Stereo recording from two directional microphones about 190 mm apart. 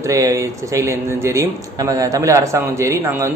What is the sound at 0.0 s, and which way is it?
Speech, 15° right (ahead or behind).